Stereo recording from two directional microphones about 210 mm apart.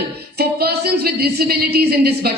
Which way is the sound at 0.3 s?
50° right (ahead or behind).